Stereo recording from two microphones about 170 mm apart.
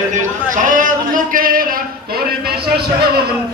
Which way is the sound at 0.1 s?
50° right (ahead or behind).